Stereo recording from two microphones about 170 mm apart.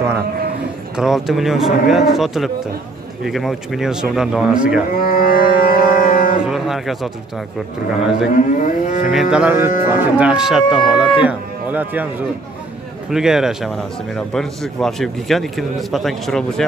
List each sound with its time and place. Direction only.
0.9 s a man's voice: centre (ahead or behind)
5.0 s music: 60° left (ahead or behind)
6.4 s cattle: centre (ahead or behind)
8.3 s livestock: 50° left (ahead or behind)
9.1 s mantra: 5° right (ahead or behind)
9.8 s a man's voice: 10° right (ahead or behind)
13.1 s a man's voice: 5° right (ahead or behind)